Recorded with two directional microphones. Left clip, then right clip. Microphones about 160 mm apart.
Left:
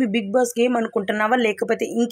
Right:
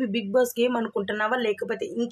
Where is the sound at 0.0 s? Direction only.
20° left (ahead or behind).